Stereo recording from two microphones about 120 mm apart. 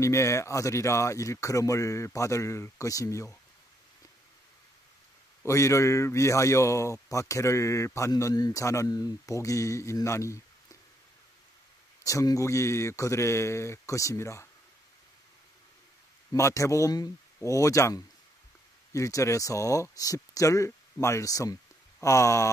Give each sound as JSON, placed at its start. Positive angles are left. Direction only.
{"t": 0.0, "sound": "a man's voice", "side_deg": 25}
{"t": 5.4, "sound": "a man's voice", "side_deg": 25}
{"t": 12.0, "sound": "a man's voice", "side_deg": 25}
{"t": 16.3, "sound": "a man's voice", "side_deg": 25}